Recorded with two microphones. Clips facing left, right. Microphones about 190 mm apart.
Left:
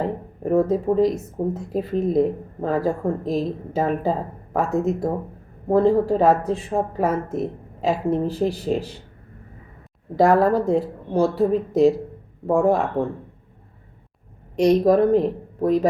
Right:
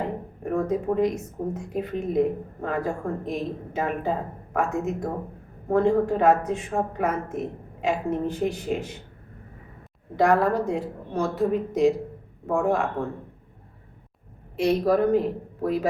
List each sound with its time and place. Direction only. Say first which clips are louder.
0.4 s speech: left 6 dB; 35° left (ahead or behind)
10.2 s speech: left 4 dB; 35° left (ahead or behind)
14.6 s speech: left 5 dB; 40° left (ahead or behind)